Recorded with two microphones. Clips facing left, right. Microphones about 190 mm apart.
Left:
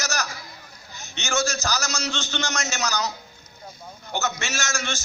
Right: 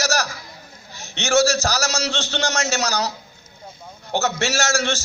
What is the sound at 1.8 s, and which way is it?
A man's voice, 65° right (ahead or behind).